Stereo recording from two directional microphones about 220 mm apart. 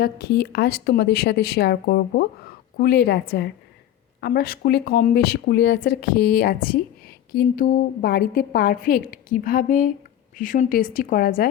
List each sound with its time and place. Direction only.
0.0 s a woman's voice: 45° left (ahead or behind)